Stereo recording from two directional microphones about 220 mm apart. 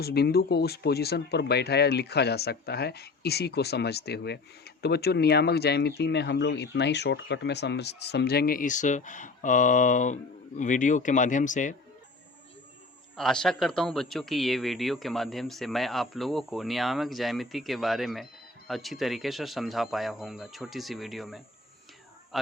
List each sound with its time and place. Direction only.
0.0 s speech: 45° left (ahead or behind)
13.1 s a man's voice: centre (ahead or behind)